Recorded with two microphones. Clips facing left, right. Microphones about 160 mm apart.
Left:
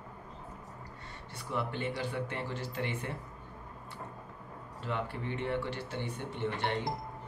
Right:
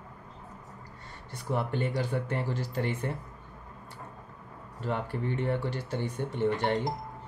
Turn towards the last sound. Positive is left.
turn(degrees=-45)  # may be behind; listen again after turning